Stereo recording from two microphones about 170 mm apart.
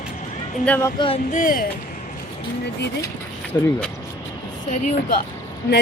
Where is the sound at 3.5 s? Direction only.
20° left (ahead or behind).